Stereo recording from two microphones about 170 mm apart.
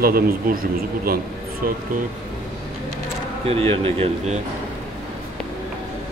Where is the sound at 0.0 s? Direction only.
60° right (ahead or behind).